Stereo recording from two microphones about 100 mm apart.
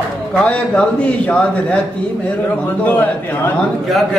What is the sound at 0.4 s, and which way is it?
A man's voice, 15° left (ahead or behind).